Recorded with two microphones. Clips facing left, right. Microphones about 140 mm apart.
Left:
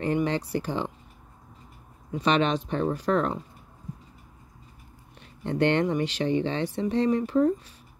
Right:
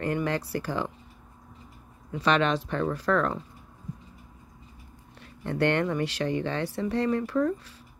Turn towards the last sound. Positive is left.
turn(degrees=20)  # may be behind; listen again after turning